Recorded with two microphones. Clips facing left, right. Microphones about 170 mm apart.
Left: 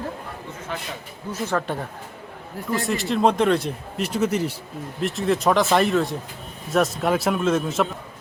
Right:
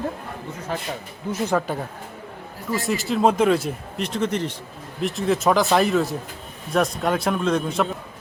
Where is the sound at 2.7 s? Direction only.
Centre (ahead or behind).